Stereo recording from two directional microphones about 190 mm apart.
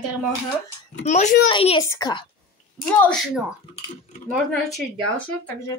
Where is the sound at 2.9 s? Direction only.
5° left (ahead or behind).